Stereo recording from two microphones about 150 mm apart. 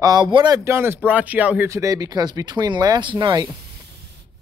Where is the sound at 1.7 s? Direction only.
20° right (ahead or behind).